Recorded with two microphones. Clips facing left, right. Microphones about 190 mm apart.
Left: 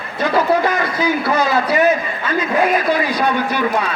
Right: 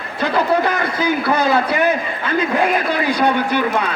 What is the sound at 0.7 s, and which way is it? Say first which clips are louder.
A man's voice: left 1 dB; 55° right (ahead or behind).